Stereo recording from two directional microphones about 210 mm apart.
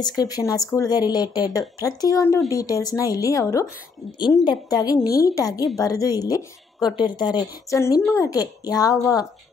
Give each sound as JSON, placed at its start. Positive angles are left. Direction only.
{"t": 0.0, "sound": "speech", "side_deg": 20}